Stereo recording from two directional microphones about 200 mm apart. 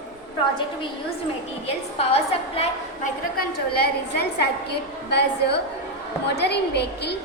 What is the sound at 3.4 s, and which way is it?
A woman's voice, 50° left (ahead or behind).